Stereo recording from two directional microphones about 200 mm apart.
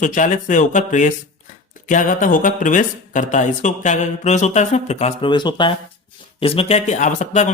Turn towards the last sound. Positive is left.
turn(degrees=35)  # may be behind; listen again after turning